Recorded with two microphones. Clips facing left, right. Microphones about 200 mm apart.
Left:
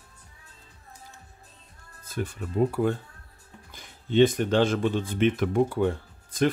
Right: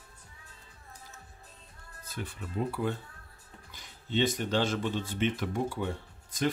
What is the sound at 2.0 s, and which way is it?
Speech, 45° left (ahead or behind).